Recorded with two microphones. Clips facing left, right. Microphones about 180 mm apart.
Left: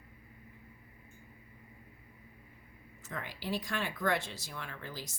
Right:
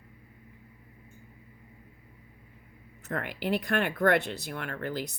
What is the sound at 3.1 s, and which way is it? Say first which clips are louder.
A woman's voice: right 8 dB; 60° right (ahead or behind).